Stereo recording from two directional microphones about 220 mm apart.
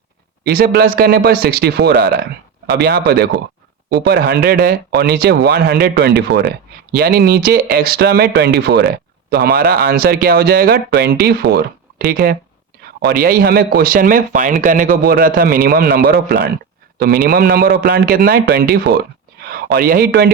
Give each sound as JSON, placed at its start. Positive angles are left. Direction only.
{"t": 0.4, "sound": "speech", "side_deg": -45}
{"t": 17.0, "sound": "speech", "side_deg": -45}